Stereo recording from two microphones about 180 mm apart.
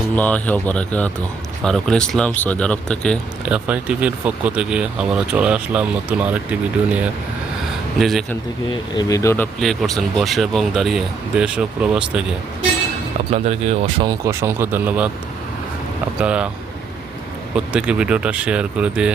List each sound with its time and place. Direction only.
0.2 s speech: 10° left (ahead or behind)
3.5 s speech: 5° right (ahead or behind)
9.0 s speech: 20° left (ahead or behind)
9.6 s speech: centre (ahead or behind)
13.3 s speech: 35° right (ahead or behind); by 15.1 s 5° right (ahead or behind)
16.2 s speech: 5° right (ahead or behind)
17.5 s speech: 5° right (ahead or behind)